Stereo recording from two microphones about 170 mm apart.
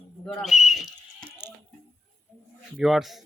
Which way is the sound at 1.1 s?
65° right (ahead or behind).